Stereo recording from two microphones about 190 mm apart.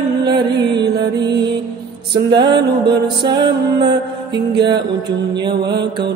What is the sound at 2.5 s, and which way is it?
Music, 25° right (ahead or behind).